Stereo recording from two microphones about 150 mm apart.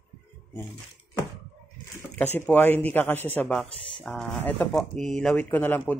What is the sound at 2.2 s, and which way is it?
Speech, 10° left (ahead or behind).